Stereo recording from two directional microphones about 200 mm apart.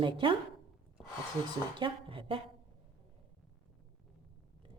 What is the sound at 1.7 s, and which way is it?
Speech, 25° right (ahead or behind).